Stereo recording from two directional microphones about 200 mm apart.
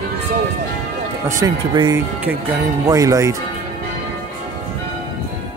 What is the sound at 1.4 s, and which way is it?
Speech, 20° right (ahead or behind).